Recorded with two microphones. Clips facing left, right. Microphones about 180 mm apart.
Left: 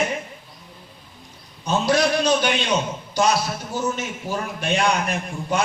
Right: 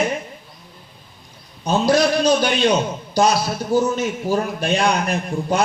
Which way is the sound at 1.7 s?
35° right (ahead or behind).